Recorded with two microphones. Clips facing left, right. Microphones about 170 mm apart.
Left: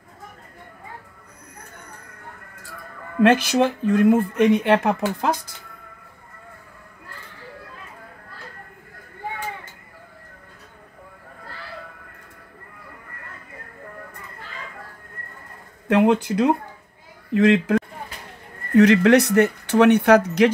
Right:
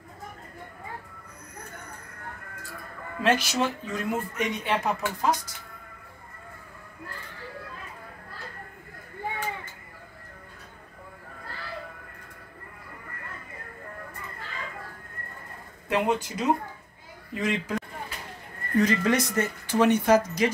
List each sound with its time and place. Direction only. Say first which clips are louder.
3.2 s speech: left 8 dB; 55° left (ahead or behind)
15.9 s a man's voice: left 8 dB; 65° left (ahead or behind)